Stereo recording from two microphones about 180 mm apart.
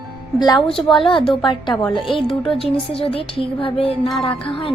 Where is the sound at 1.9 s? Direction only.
Centre (ahead or behind).